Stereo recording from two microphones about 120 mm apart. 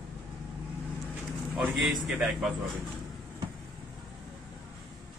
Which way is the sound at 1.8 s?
Centre (ahead or behind).